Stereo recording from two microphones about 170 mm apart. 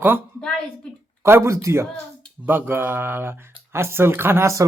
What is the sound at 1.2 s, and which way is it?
Speech, 15° right (ahead or behind).